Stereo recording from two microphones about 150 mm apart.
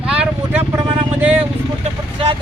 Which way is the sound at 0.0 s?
10° right (ahead or behind).